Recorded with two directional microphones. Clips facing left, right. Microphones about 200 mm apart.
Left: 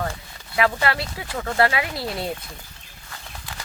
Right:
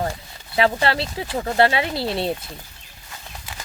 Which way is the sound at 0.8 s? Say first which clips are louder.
Right 3 dB; 30° right (ahead or behind).